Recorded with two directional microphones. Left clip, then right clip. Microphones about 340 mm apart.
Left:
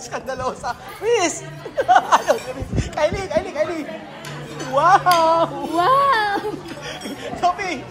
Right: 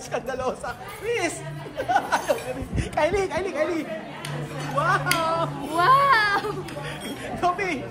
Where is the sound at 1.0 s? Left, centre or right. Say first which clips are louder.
Left 8 dB; left.